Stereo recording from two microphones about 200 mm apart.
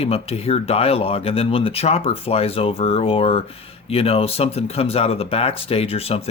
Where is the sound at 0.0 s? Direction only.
30° left (ahead or behind).